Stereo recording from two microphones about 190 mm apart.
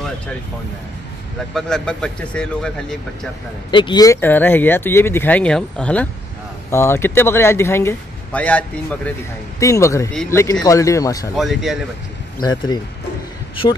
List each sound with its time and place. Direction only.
1.5 s speech: 5° left (ahead or behind)
3.7 s speech: 25° left (ahead or behind)
11.3 s speech: centre (ahead or behind)
12.4 s speech: 20° left (ahead or behind)